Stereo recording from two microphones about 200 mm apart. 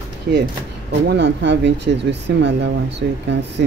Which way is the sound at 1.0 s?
60° right (ahead or behind).